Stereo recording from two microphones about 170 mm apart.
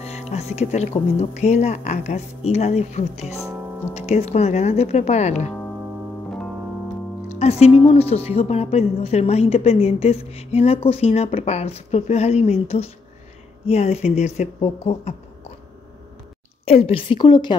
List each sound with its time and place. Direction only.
0.0 s a woman's voice: 40° left (ahead or behind)
7.3 s a woman's voice: 40° left (ahead or behind)
16.6 s a woman's voice: 35° left (ahead or behind)